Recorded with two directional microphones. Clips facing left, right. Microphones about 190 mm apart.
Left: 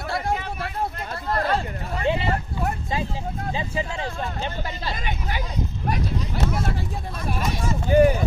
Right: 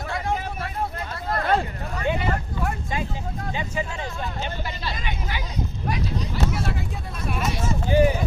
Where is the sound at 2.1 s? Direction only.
30° left (ahead or behind).